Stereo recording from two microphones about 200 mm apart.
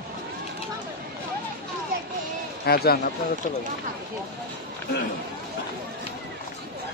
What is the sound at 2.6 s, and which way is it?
Speech, 50° left (ahead or behind).